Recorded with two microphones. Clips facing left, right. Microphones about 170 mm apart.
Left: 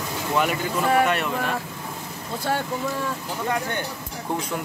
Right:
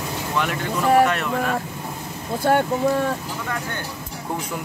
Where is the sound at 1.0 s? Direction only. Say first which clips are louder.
Right 2 dB; centre (ahead or behind).